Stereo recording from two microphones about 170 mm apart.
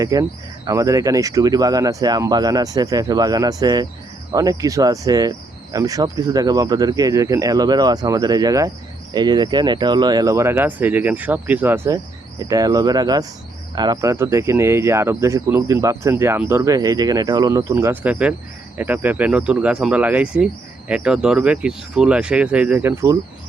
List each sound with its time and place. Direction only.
0.0 s speech: 20° right (ahead or behind)